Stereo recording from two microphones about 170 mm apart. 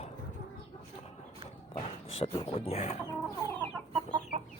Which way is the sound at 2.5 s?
35° left (ahead or behind).